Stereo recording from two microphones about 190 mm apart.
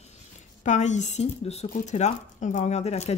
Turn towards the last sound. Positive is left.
turn(degrees=35)  # may be behind; listen again after turning